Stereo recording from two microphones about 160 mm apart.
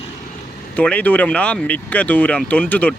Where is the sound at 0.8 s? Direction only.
10° left (ahead or behind).